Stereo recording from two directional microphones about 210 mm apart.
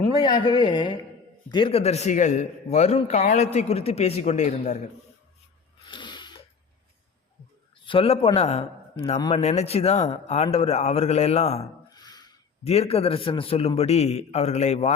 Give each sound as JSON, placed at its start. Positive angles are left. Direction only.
{"t": 0.2, "sound": "a man's voice", "side_deg": 20}
{"t": 5.8, "sound": "a sound", "side_deg": 20}
{"t": 7.9, "sound": "a man's voice", "side_deg": 25}
{"t": 11.9, "sound": "a man's voice", "side_deg": 20}